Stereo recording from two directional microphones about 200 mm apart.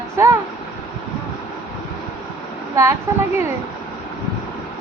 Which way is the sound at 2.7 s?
15° right (ahead or behind).